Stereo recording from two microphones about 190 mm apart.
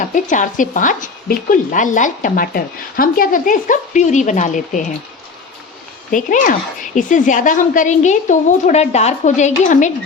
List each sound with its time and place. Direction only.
0.0 s speech: 45° left (ahead or behind)
6.1 s speech: 45° left (ahead or behind)